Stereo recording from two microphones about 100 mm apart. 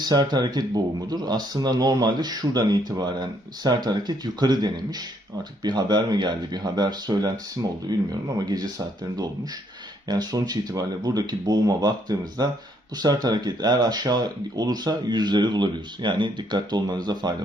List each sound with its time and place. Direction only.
0.0 s speech: 45° right (ahead or behind)